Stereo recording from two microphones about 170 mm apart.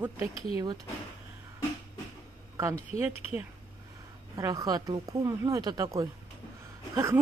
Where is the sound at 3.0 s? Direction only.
10° right (ahead or behind).